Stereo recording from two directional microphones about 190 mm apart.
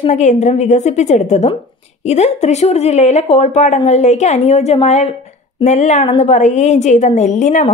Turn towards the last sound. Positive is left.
turn(degrees=40)  # may be behind; listen again after turning